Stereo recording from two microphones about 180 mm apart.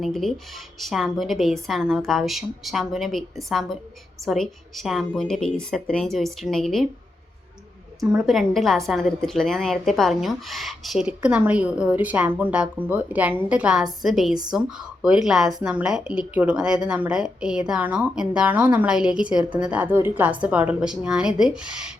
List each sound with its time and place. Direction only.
0.0 s speech: centre (ahead or behind)
8.1 s speech: centre (ahead or behind)